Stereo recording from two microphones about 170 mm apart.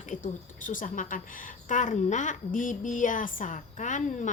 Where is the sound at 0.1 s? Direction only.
50° left (ahead or behind).